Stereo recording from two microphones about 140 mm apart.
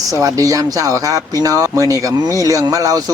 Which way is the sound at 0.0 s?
25° right (ahead or behind).